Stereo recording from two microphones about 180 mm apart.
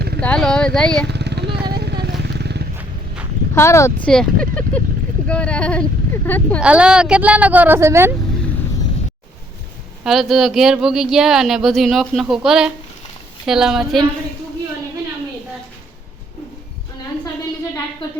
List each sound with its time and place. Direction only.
0.2 s speech: 5° left (ahead or behind)
1.0 s vehicle: 70° right (ahead or behind)
3.5 s speech: 15° left (ahead or behind)
4.1 s speech: 5° left (ahead or behind)
6.6 s a woman's voice: 5° right (ahead or behind)
10.0 s speech: centre (ahead or behind)